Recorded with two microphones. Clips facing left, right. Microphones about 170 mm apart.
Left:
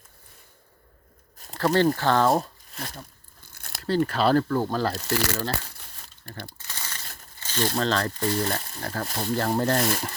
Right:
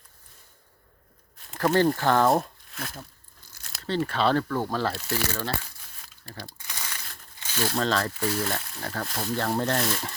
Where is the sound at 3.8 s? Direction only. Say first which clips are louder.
Left 3 dB; 5° left (ahead or behind).